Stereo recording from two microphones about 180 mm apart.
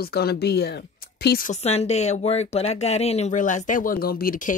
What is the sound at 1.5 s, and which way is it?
A woman's voice, 35° left (ahead or behind).